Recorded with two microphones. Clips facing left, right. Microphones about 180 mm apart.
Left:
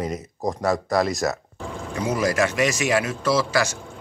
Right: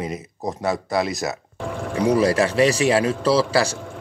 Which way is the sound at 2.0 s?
35° right (ahead or behind).